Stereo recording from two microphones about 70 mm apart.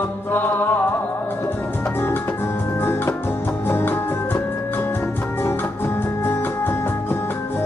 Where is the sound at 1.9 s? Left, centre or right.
Left.